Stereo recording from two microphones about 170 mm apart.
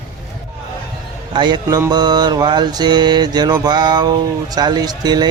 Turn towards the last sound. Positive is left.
turn(degrees=-25)  # may be behind; listen again after turning